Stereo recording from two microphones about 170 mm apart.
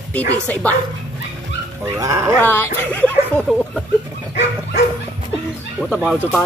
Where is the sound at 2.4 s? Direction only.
10° left (ahead or behind).